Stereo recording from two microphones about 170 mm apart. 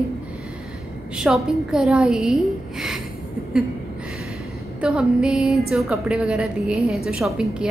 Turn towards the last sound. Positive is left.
turn(degrees=-5)  # may be behind; listen again after turning